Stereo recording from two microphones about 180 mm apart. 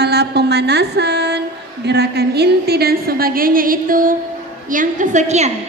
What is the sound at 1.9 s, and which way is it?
A woman's voice, 65° right (ahead or behind).